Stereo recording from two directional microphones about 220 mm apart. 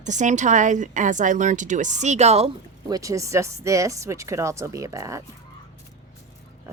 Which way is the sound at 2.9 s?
15° right (ahead or behind).